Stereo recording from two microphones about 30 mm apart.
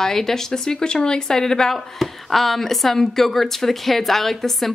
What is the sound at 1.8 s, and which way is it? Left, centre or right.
Speech, centre.